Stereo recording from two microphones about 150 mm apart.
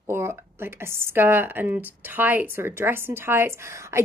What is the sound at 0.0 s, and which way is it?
A woman's voice, 15° right (ahead or behind).